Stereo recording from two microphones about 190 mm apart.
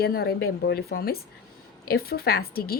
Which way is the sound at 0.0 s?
55° left (ahead or behind).